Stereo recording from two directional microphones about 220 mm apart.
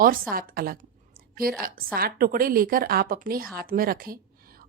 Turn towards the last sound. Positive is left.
turn(degrees=-40)  # may be behind; listen again after turning